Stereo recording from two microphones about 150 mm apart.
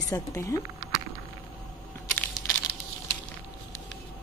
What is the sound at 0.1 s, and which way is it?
Speech, 20° left (ahead or behind).